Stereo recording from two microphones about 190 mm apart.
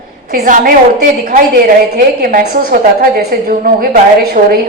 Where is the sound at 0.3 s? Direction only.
45° right (ahead or behind).